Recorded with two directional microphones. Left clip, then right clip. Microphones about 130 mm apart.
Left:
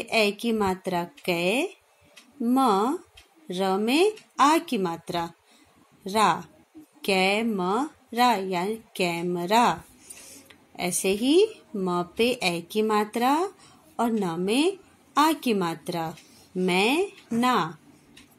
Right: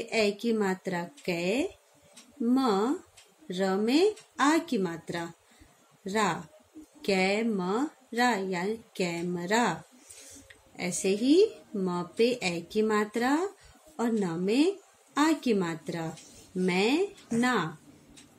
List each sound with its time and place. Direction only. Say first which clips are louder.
0.0 s a woman's voice: left 4 dB; 35° left (ahead or behind)
10.8 s a woman's voice: left 3 dB; 35° left (ahead or behind)